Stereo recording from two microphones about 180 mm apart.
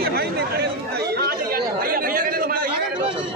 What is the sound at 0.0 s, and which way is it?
Chatter, 60° right (ahead or behind).